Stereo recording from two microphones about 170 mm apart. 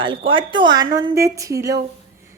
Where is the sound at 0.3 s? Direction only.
30° right (ahead or behind).